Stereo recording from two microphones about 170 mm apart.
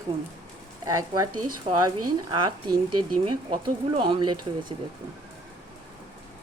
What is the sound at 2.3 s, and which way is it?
A woman's voice, 25° right (ahead or behind).